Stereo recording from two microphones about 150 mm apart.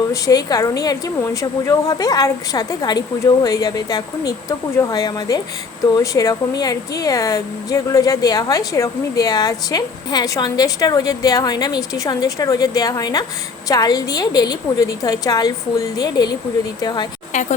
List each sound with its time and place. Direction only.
0.1 s speech: 25° left (ahead or behind)
17.3 s a woman's voice: 50° left (ahead or behind)